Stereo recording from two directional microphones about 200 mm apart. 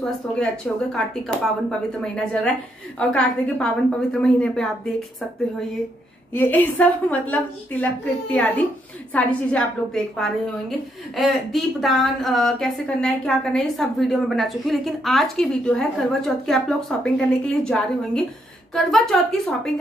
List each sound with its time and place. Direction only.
0.9 s speech: centre (ahead or behind)
6.3 s a woman's voice: 10° left (ahead or behind)